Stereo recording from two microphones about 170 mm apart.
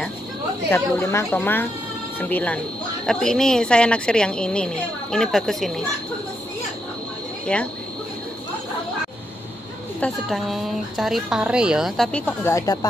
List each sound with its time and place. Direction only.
0.7 s a woman's voice: 10° left (ahead or behind)
7.5 s a woman's voice: 5° left (ahead or behind)
9.9 s speech: 5° left (ahead or behind)